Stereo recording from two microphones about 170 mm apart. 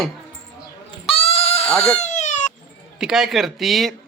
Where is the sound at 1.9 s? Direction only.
45° left (ahead or behind).